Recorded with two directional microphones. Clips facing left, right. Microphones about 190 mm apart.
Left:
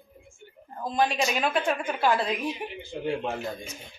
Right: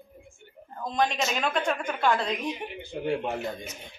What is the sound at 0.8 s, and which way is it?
A woman's voice, 5° left (ahead or behind).